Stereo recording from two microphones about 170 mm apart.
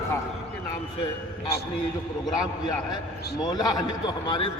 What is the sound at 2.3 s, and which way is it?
A man's voice, 20° left (ahead or behind).